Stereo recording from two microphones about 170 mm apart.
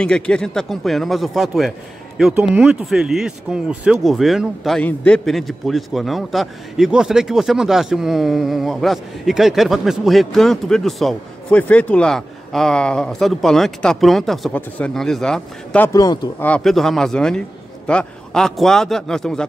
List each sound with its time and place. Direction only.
0.0 s speech: 5° left (ahead or behind)
15.9 s speech: 20° left (ahead or behind)
16.4 s speech: 5° left (ahead or behind)